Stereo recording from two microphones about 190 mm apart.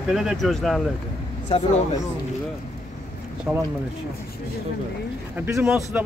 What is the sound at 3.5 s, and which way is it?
Speech, 5° right (ahead or behind).